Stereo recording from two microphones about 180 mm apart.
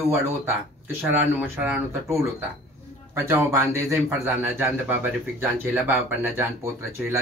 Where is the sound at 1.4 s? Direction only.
10° right (ahead or behind).